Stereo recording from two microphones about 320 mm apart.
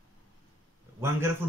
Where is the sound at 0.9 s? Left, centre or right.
Centre.